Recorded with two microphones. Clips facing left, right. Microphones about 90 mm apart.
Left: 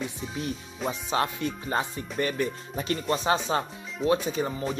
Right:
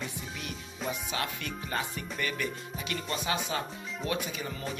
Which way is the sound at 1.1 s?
30° left (ahead or behind).